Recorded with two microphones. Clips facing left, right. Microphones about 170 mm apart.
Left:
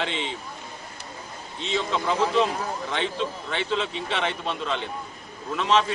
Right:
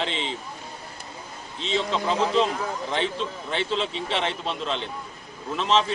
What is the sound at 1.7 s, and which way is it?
Speech, 30° right (ahead or behind).